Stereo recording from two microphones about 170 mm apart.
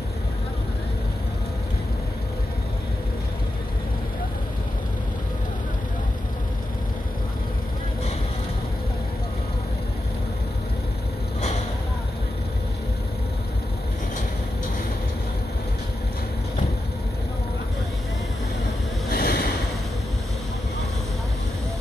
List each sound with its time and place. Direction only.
19.0 s waves: 65° left (ahead or behind)